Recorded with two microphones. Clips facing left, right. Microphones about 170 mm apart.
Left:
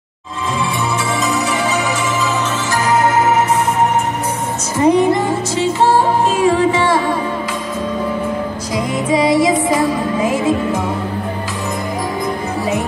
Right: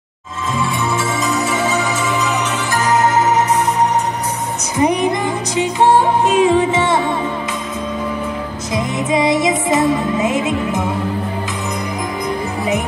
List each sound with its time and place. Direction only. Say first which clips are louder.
2.7 s music: even; 20° right (ahead or behind)
4.7 s music: left 4 dB; 15° right (ahead or behind)
8.7 s music: left 1 dB; 20° right (ahead or behind)